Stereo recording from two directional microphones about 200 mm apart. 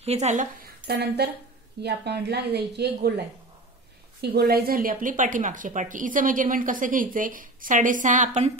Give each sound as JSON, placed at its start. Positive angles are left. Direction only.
{"t": 0.0, "sound": "speech", "side_deg": -35}